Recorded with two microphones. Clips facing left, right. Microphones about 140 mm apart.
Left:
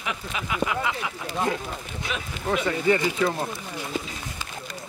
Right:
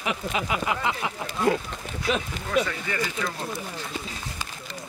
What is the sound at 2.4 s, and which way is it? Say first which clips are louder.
Speech: left 6 dB; 25° left (ahead or behind).